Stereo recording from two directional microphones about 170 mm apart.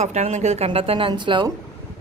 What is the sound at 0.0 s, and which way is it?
A woman's voice, 40° right (ahead or behind).